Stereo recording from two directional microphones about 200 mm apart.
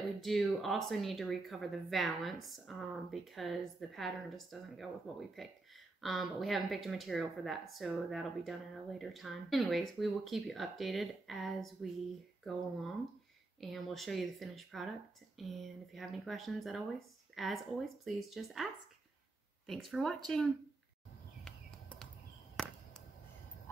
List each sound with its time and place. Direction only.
0.2 s speech: centre (ahead or behind)
13.6 s speech: centre (ahead or behind)
21.5 s a sound: 5° left (ahead or behind)